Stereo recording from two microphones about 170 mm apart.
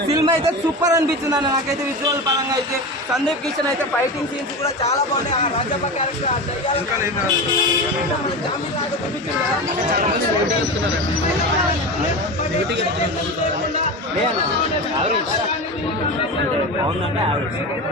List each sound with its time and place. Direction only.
0.1 s a man's voice: 25° right (ahead or behind)
4.6 s speech: 40° left (ahead or behind)